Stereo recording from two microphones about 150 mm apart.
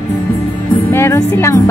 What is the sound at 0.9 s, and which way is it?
Speech, 20° left (ahead or behind).